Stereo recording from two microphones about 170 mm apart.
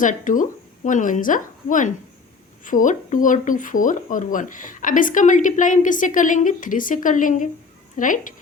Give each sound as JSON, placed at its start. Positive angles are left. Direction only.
{"t": 0.0, "sound": "speech", "side_deg": 50}